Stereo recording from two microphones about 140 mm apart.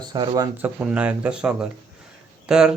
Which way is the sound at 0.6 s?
10° right (ahead or behind).